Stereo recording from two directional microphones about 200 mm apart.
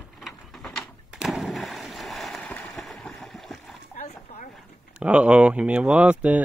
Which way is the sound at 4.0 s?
35° left (ahead or behind).